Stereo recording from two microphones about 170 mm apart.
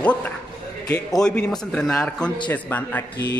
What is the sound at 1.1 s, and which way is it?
A man's voice, 5° left (ahead or behind).